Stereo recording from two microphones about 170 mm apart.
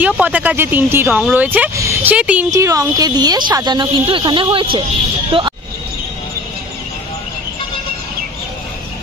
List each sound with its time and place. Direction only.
0.0 s speech: 10° right (ahead or behind)
2.5 s speech: 20° right (ahead or behind)